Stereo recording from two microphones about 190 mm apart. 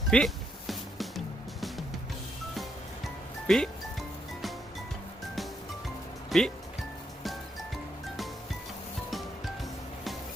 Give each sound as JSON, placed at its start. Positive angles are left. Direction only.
{"t": 0.1, "sound": "speech", "side_deg": 5}
{"t": 0.7, "sound": "music", "side_deg": 0}
{"t": 2.6, "sound": "music", "side_deg": 0}
{"t": 6.3, "sound": "speech", "side_deg": 0}